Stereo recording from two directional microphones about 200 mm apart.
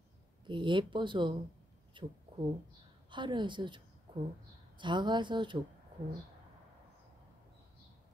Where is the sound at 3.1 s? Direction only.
25° right (ahead or behind).